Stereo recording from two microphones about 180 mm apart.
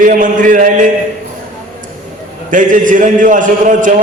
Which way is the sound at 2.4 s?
45° right (ahead or behind).